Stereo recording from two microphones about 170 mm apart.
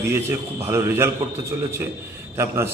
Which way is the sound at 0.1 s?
15° right (ahead or behind).